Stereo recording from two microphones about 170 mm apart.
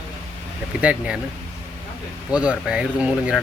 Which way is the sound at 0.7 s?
5° right (ahead or behind).